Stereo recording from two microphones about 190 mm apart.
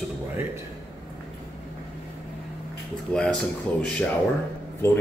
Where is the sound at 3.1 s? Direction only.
5° left (ahead or behind).